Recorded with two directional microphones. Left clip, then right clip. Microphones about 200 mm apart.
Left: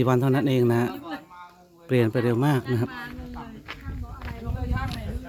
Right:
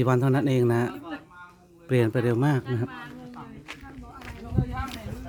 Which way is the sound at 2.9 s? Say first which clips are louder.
Left 3 dB; 60° left (ahead or behind).